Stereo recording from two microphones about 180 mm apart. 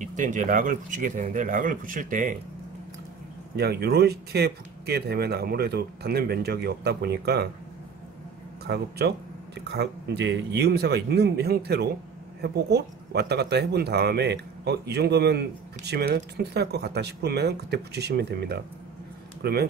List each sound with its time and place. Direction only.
0.0 s speech: 45° right (ahead or behind)
3.5 s speech: 65° right (ahead or behind)
8.6 s speech: 65° right (ahead or behind)